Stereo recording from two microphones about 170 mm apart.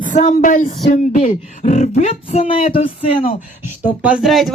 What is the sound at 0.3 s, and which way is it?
Speech, 50° left (ahead or behind).